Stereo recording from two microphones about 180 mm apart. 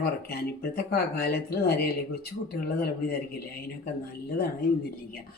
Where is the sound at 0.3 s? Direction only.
60° left (ahead or behind).